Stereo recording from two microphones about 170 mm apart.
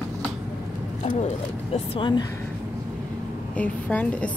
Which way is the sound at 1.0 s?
40° left (ahead or behind).